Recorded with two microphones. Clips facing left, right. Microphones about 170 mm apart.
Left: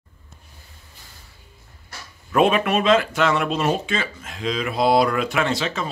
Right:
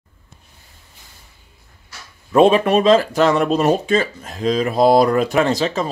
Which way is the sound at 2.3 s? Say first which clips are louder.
Right 6 dB; 30° right (ahead or behind).